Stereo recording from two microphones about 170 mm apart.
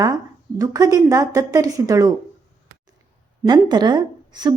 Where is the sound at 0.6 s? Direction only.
20° right (ahead or behind).